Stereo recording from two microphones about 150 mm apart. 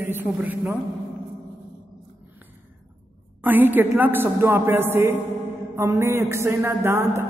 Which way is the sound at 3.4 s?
10° right (ahead or behind).